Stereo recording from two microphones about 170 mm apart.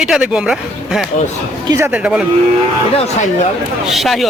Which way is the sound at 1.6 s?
15° right (ahead or behind).